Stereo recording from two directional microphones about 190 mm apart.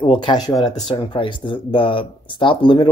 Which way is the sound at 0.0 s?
25° left (ahead or behind).